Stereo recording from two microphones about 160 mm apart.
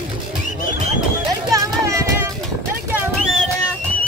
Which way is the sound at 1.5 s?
20° right (ahead or behind).